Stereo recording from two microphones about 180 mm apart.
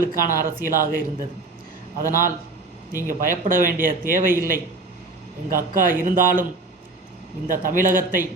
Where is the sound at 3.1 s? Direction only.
50° right (ahead or behind).